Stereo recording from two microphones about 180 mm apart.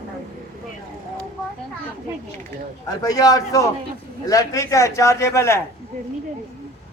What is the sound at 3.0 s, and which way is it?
A man's voice, 20° left (ahead or behind).